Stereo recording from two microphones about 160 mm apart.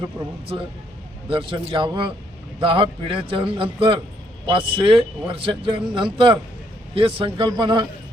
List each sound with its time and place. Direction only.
1.3 s speech: 30° right (ahead or behind)